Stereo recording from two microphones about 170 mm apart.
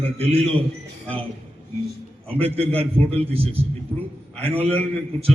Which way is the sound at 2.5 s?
35° right (ahead or behind).